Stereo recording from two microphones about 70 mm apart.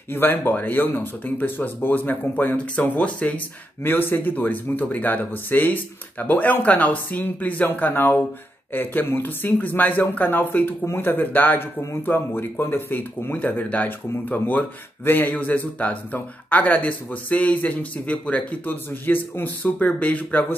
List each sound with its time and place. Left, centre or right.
0.1 s speech: left
18.9 s speech: left